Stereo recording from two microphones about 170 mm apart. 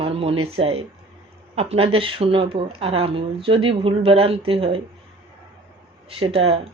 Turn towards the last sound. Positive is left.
turn(degrees=-35)  # may be behind; listen again after turning